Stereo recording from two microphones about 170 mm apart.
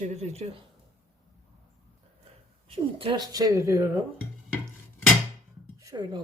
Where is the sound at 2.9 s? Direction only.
30° right (ahead or behind).